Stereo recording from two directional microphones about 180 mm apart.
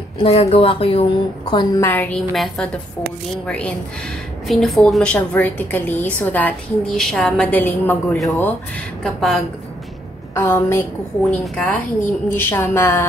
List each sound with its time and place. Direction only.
0.2 s speech: 35° left (ahead or behind)
1.5 s a woman's voice: 20° left (ahead or behind); by 9.4 s centre (ahead or behind)
10.3 s a woman's voice: 15° left (ahead or behind)